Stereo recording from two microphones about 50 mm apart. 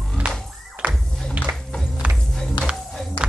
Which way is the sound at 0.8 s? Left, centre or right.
Right.